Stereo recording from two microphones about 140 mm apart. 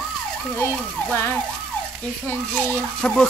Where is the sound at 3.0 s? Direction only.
5° left (ahead or behind).